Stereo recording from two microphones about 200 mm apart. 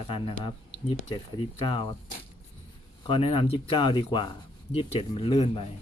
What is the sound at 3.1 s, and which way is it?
Speech, 25° left (ahead or behind).